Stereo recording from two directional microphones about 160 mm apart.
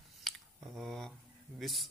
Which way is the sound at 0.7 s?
Centre (ahead or behind).